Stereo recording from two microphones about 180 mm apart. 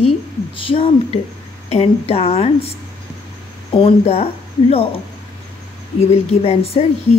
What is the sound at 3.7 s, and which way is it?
A woman's voice, 30° left (ahead or behind).